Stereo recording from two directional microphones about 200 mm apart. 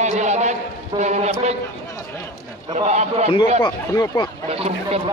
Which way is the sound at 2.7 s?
35° right (ahead or behind).